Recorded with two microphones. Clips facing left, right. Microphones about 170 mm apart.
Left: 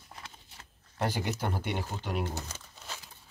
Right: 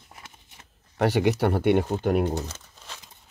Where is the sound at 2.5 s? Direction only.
5° left (ahead or behind).